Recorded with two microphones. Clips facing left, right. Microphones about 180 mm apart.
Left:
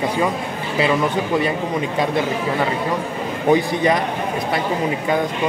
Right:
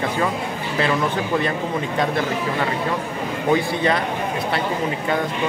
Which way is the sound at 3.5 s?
20° left (ahead or behind).